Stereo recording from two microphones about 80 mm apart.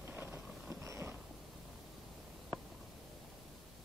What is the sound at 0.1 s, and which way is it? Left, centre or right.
Vehicle, right.